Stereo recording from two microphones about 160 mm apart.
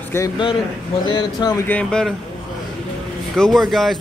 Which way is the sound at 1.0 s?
25° left (ahead or behind).